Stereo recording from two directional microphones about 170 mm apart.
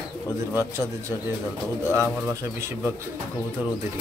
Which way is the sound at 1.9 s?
15° right (ahead or behind).